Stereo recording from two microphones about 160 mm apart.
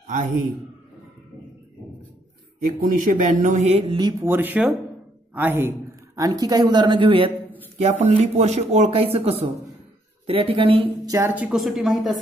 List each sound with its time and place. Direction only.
0.0 s a man's voice: 55° right (ahead or behind)
2.8 s speech: 55° right (ahead or behind); by 4.0 s 40° right (ahead or behind)
4.0 s a man's voice: 15° right (ahead or behind); by 7.3 s 30° right (ahead or behind)
7.7 s speech: 40° right (ahead or behind)
11.1 s speech: 15° right (ahead or behind)